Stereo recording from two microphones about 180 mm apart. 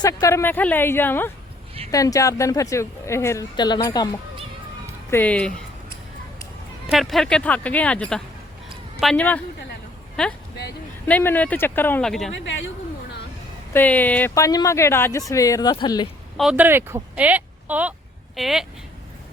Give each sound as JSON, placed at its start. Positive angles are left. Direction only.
{"t": 0.0, "sound": "a woman's voice", "side_deg": 20}
{"t": 5.1, "sound": "a woman's voice", "side_deg": 5}
{"t": 6.9, "sound": "a woman's voice", "side_deg": 0}
{"t": 12.3, "sound": "speech", "side_deg": 90}
{"t": 13.7, "sound": "a woman's voice", "side_deg": 10}
{"t": 16.4, "sound": "speech", "side_deg": -5}